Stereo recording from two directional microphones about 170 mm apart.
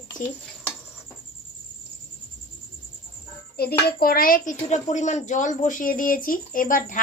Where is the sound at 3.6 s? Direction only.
65° left (ahead or behind); by 7.0 s 50° left (ahead or behind).